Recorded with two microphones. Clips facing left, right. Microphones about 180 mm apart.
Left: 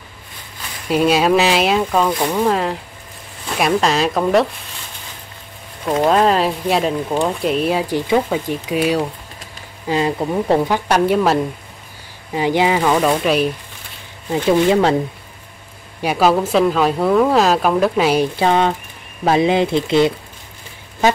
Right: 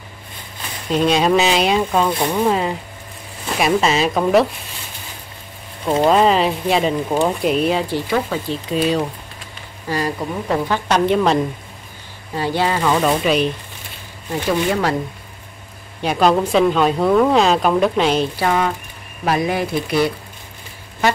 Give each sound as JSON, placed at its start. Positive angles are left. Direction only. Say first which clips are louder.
{"t": 0.8, "sound": "speech", "louder": "left 1 dB", "side_deg": 5}
{"t": 5.9, "sound": "speech", "louder": "even", "side_deg": -5}
{"t": 7.9, "sound": "speech", "louder": "left 3 dB", "side_deg": 15}
{"t": 9.8, "sound": "speech", "louder": "left 4 dB", "side_deg": 20}
{"t": 10.1, "sound": "speech", "louder": "left 5 dB", "side_deg": 30}
{"t": 10.7, "sound": "speech", "louder": "left 1 dB", "side_deg": 10}
{"t": 12.4, "sound": "speech", "louder": "left 3 dB", "side_deg": 15}
{"t": 13.0, "sound": "speech", "louder": "left 1 dB", "side_deg": 0}
{"t": 14.5, "sound": "speech", "louder": "left 5 dB", "side_deg": 25}
{"t": 16.0, "sound": "speech", "louder": "even", "side_deg": 5}
{"t": 18.3, "sound": "speech", "louder": "left 3 dB", "side_deg": 25}